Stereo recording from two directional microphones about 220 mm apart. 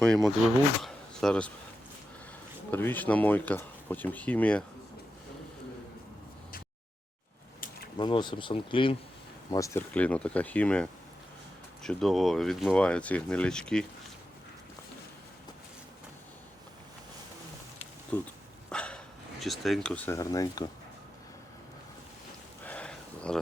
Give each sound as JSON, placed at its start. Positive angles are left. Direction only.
{"t": 0.0, "sound": "speech", "side_deg": 0}
{"t": 0.8, "sound": "a sound", "side_deg": 0}
{"t": 2.6, "sound": "speech", "side_deg": 10}
{"t": 7.9, "sound": "speech", "side_deg": 20}
{"t": 18.1, "sound": "speech", "side_deg": 5}
{"t": 22.6, "sound": "a sound", "side_deg": 5}